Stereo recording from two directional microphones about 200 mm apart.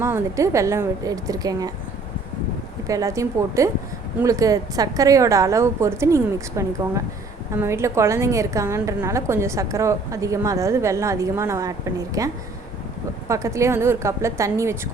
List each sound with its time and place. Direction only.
0.0 s a woman's voice: 15° right (ahead or behind)
2.8 s a woman's voice: 15° right (ahead or behind)